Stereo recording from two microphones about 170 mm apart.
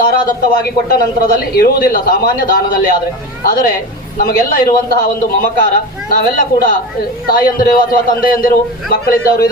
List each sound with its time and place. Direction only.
0.0 s a man's voice: 60° left (ahead or behind)
4.2 s a man's voice: 60° left (ahead or behind)